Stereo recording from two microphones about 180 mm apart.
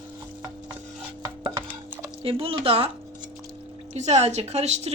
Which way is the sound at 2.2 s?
30° right (ahead or behind).